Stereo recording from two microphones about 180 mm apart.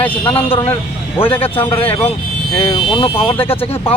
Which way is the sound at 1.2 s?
30° left (ahead or behind).